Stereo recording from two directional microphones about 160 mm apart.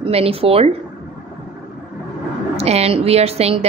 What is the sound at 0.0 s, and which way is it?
Speech, 35° right (ahead or behind).